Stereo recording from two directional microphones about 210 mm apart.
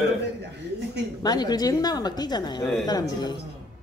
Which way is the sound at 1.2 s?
20° left (ahead or behind).